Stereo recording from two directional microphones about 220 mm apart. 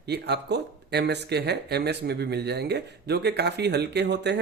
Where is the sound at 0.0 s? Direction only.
50° right (ahead or behind).